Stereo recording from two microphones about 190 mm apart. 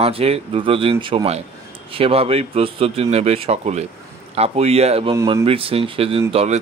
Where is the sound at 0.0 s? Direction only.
30° right (ahead or behind).